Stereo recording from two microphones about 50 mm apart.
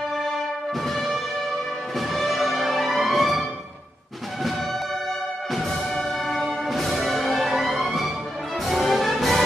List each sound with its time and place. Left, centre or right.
0.8 s music: centre
5.9 s music: centre